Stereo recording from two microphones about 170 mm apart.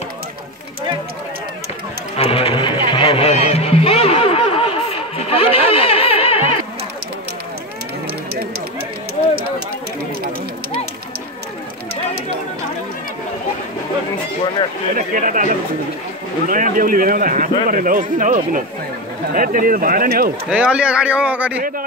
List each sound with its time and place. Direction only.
2.1 s music: 35° left (ahead or behind)
15.0 s speech: 50° right (ahead or behind)
20.4 s speech: 5° right (ahead or behind)